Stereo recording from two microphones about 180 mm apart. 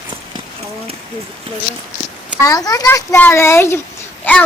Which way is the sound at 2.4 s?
20° left (ahead or behind).